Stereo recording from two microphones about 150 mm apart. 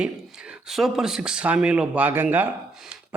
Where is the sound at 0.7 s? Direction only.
Centre (ahead or behind).